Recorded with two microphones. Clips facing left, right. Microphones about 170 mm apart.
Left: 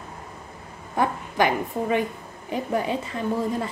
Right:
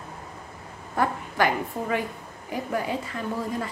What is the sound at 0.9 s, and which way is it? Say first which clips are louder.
A woman's voice: left 2 dB; 20° left (ahead or behind).